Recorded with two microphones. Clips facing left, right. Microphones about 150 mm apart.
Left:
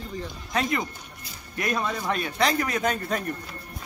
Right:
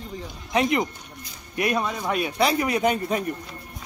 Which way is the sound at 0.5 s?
20° right (ahead or behind).